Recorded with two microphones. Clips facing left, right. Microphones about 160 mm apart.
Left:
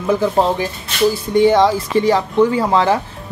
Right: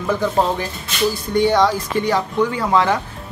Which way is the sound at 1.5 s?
25° left (ahead or behind).